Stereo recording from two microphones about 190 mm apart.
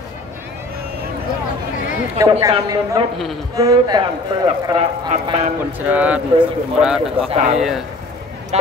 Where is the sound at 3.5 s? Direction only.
20° right (ahead or behind).